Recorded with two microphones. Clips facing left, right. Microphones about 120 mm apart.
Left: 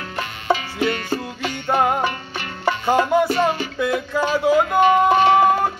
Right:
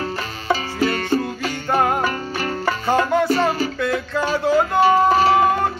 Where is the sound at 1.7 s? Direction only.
Centre (ahead or behind).